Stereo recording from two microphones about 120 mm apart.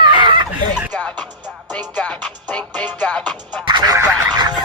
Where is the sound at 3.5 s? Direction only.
35° right (ahead or behind).